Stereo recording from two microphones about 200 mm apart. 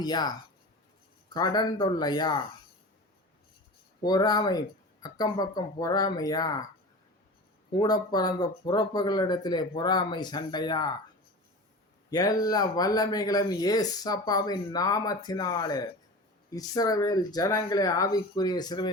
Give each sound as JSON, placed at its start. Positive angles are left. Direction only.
{"t": 0.0, "sound": "speech", "side_deg": 20}
{"t": 4.0, "sound": "speech", "side_deg": 20}
{"t": 7.7, "sound": "speech", "side_deg": 20}
{"t": 12.1, "sound": "speech", "side_deg": 20}